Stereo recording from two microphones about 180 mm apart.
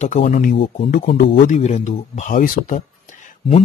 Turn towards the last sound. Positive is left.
turn(degrees=40)  # may be behind; listen again after turning